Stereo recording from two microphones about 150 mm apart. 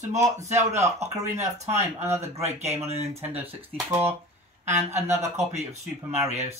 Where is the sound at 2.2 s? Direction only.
45° right (ahead or behind).